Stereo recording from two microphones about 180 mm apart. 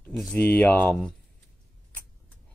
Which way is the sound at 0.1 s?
Centre (ahead or behind).